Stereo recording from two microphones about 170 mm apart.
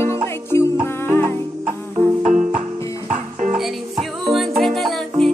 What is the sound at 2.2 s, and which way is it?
Music, 45° right (ahead or behind).